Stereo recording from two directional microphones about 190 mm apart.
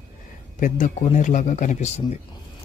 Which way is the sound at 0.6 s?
45° left (ahead or behind).